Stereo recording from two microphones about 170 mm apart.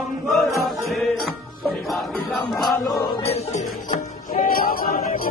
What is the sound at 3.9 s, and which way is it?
Music, 55° left (ahead or behind).